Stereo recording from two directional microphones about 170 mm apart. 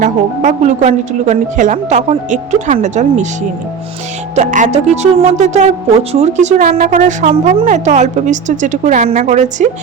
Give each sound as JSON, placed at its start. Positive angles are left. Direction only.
{"t": 0.0, "sound": "a woman's voice", "side_deg": -45}
{"t": 4.4, "sound": "a woman's voice", "side_deg": -45}